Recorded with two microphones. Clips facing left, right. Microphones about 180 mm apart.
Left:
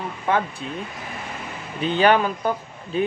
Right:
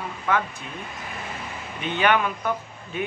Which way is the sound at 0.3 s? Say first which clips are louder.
Left 2 dB; 30° left (ahead or behind).